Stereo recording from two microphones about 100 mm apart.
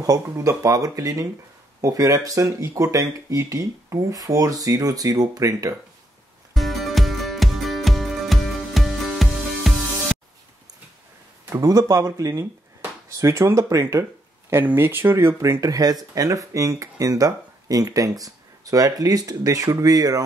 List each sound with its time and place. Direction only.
0.0 s speech: 35° right (ahead or behind)
6.5 s music: centre (ahead or behind)
11.6 s speech: 35° right (ahead or behind)
14.5 s speech: 20° right (ahead or behind); by 20.2 s 40° right (ahead or behind)